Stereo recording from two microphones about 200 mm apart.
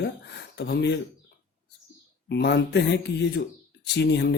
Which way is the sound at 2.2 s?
55° left (ahead or behind).